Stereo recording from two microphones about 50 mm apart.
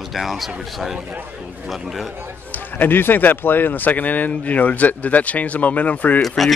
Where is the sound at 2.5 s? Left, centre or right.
Left.